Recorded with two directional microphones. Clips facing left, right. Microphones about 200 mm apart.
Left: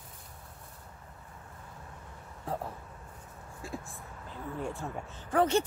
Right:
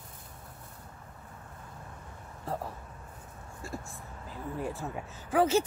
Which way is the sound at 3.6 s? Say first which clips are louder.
Even; centre (ahead or behind).